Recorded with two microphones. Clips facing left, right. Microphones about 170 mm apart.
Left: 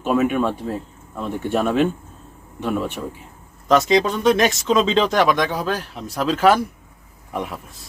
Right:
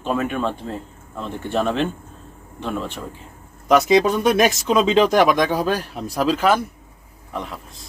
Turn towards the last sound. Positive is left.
turn(degrees=10)  # may be behind; listen again after turning